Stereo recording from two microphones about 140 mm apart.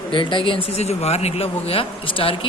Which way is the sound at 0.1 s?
35° left (ahead or behind).